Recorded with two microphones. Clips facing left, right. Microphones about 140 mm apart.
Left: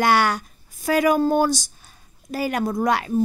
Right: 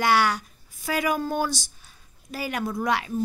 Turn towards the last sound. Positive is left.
turn(degrees=45)  # may be behind; listen again after turning